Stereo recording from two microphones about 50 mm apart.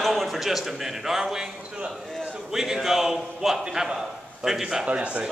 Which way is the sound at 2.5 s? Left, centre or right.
Centre.